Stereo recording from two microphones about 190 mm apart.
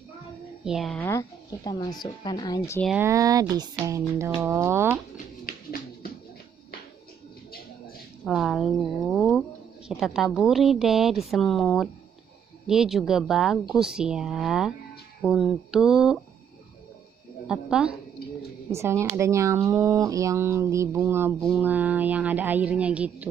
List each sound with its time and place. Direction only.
0.7 s speech: centre (ahead or behind)
1.0 s speech: 20° left (ahead or behind)
3.0 s speech: 15° right (ahead or behind)
5.1 s a sound: 50° left (ahead or behind)
8.3 s speech: centre (ahead or behind)
17.5 s speech: 5° right (ahead or behind)
18.7 s speech: 15° right (ahead or behind)